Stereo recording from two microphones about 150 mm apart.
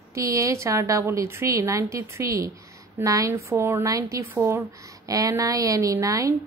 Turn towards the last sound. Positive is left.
turn(degrees=-20)  # may be behind; listen again after turning